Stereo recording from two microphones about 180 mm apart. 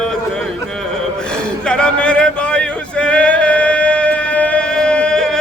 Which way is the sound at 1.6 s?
5° left (ahead or behind).